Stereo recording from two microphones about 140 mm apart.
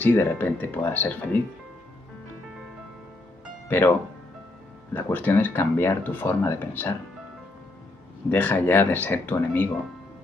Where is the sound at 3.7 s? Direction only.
15° left (ahead or behind).